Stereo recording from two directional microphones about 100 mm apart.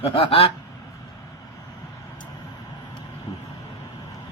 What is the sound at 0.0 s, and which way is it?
Speech, 75° left (ahead or behind).